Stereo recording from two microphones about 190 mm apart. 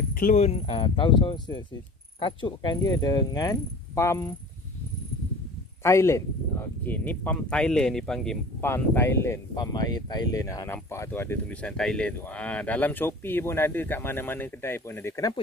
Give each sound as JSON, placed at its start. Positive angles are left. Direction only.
{"t": 0.1, "sound": "speech", "side_deg": 45}
{"t": 5.8, "sound": "speech", "side_deg": 15}